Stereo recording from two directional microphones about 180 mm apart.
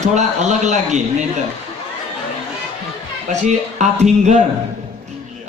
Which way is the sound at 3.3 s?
40° right (ahead or behind).